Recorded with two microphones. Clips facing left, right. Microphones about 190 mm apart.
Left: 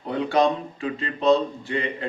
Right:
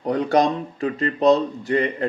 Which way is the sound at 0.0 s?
40° right (ahead or behind).